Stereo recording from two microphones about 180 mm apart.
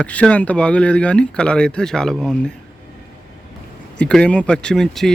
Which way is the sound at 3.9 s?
5° left (ahead or behind).